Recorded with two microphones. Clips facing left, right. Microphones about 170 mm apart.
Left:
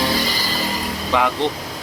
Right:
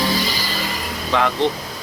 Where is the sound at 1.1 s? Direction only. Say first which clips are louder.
Even; 15° left (ahead or behind).